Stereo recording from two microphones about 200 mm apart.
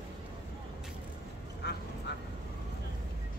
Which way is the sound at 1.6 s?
60° left (ahead or behind).